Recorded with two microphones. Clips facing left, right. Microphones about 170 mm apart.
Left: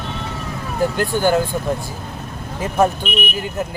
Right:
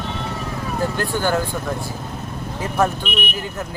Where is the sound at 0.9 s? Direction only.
15° left (ahead or behind).